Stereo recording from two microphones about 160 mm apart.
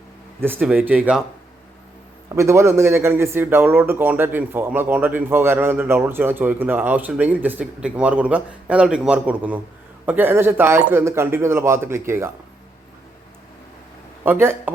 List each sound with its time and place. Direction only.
0.3 s speech: 15° right (ahead or behind)
2.3 s speech: 20° right (ahead or behind)
14.3 s speech: 15° right (ahead or behind)